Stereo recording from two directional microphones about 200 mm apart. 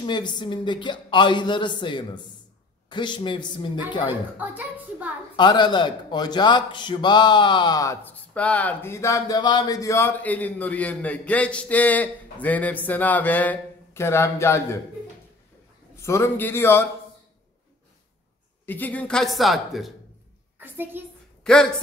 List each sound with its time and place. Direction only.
0.0 s a man's voice: 20° left (ahead or behind)
4.4 s a woman's voice: 10° right (ahead or behind)
5.3 s a man's voice: 20° left (ahead or behind)
16.0 s a man's voice: 15° left (ahead or behind)
18.7 s a woman's voice: 10° left (ahead or behind); by 21.0 s 10° right (ahead or behind)
21.5 s speech: 5° left (ahead or behind)